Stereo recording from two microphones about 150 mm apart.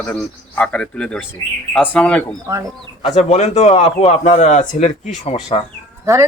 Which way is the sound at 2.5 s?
20° right (ahead or behind).